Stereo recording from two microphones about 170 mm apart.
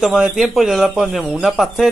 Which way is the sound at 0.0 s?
Centre (ahead or behind).